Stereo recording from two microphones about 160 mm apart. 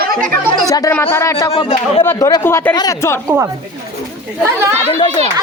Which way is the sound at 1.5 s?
40° left (ahead or behind).